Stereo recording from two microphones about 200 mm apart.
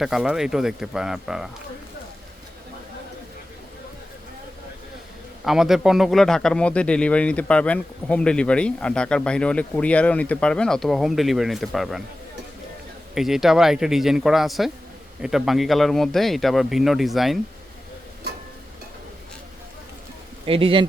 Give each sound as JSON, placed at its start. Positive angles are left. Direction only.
{"t": 0.0, "sound": "speech", "side_deg": -5}
{"t": 5.5, "sound": "speech", "side_deg": 0}
{"t": 13.1, "sound": "speech", "side_deg": 0}
{"t": 20.4, "sound": "speech", "side_deg": -25}